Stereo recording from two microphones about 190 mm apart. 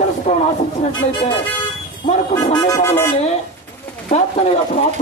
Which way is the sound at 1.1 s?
25° left (ahead or behind).